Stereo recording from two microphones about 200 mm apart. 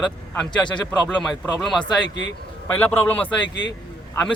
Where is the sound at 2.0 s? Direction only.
60° left (ahead or behind).